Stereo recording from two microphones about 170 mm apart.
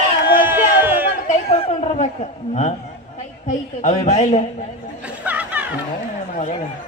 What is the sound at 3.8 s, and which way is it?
Speech, 40° left (ahead or behind).